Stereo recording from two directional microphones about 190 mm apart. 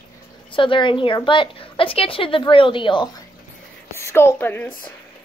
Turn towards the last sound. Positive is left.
turn(degrees=10)  # may be behind; listen again after turning